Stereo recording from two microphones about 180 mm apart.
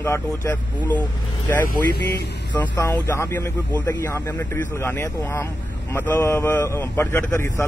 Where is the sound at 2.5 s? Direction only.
25° left (ahead or behind).